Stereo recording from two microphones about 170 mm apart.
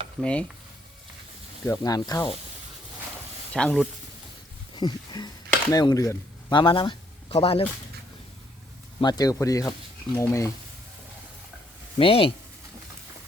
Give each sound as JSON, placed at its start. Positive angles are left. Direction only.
{"t": 0.2, "sound": "speech", "side_deg": 5}
{"t": 1.6, "sound": "speech", "side_deg": 20}
{"t": 3.5, "sound": "speech", "side_deg": 5}
{"t": 4.7, "sound": "speech", "side_deg": 25}
{"t": 9.0, "sound": "speech", "side_deg": 25}
{"t": 11.9, "sound": "speech", "side_deg": 35}